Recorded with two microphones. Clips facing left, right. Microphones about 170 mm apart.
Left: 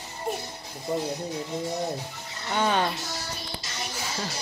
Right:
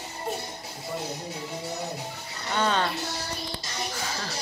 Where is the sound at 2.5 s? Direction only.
15° left (ahead or behind).